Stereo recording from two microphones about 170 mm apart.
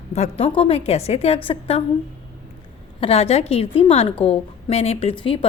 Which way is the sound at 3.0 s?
35° left (ahead or behind).